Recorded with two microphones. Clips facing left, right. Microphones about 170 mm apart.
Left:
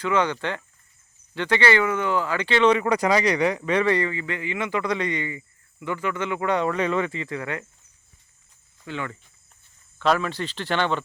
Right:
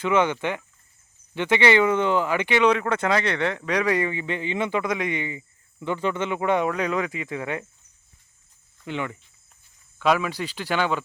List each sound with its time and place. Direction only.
0.0 s speech: 20° right (ahead or behind)
2.6 s speech: centre (ahead or behind)
3.9 s speech: 20° right (ahead or behind)
6.7 s speech: 5° right (ahead or behind)
7.1 s speech: 15° right (ahead or behind)
8.9 s speech: 20° right (ahead or behind)